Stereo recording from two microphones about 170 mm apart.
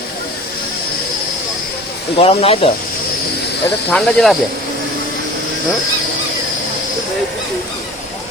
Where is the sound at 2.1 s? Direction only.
35° left (ahead or behind).